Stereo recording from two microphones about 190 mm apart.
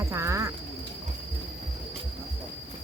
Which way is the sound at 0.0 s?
15° right (ahead or behind).